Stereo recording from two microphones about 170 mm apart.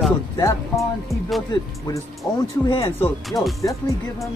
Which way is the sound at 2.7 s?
30° left (ahead or behind).